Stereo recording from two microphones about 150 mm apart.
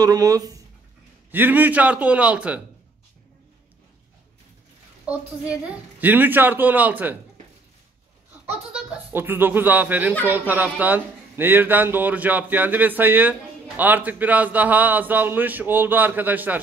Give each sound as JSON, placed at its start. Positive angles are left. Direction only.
{"t": 0.0, "sound": "speech", "side_deg": -25}
{"t": 1.3, "sound": "speech", "side_deg": -10}
{"t": 5.0, "sound": "speech", "side_deg": -10}
{"t": 8.5, "sound": "speech", "side_deg": -10}